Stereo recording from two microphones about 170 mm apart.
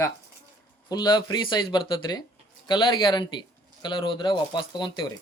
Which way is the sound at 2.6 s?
25° left (ahead or behind).